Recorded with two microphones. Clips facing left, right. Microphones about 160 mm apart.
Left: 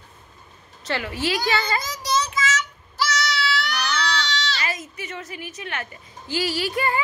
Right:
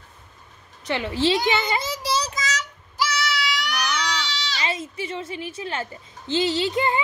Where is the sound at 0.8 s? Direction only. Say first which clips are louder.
Right 4 dB; 20° right (ahead or behind); by 2.7 s 40° right (ahead or behind).